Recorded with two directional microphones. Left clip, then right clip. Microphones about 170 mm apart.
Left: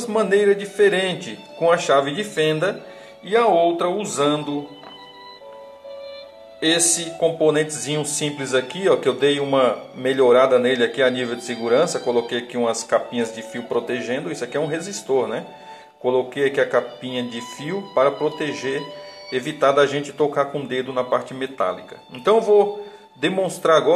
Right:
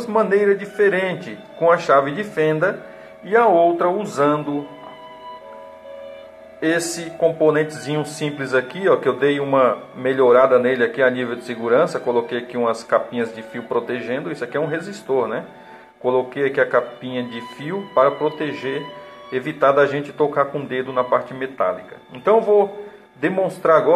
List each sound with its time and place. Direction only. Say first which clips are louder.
0.0 s a man's voice: right 1 dB; 15° left (ahead or behind)
6.6 s a man's voice: left 1 dB; 25° left (ahead or behind)